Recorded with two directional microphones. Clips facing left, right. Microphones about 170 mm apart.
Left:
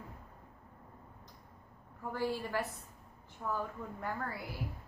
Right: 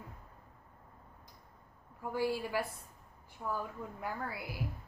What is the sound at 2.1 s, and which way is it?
A woman's voice, 10° right (ahead or behind).